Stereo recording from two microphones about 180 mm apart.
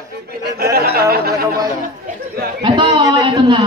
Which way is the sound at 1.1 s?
55° right (ahead or behind).